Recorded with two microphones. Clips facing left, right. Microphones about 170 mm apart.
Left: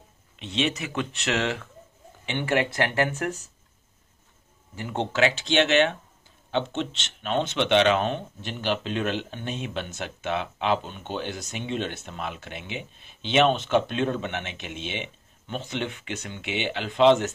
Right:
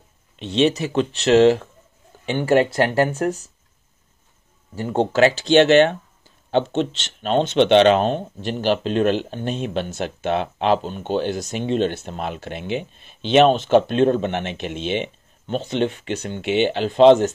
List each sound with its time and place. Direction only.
0.4 s speech: 35° right (ahead or behind)
4.7 s speech: 40° right (ahead or behind)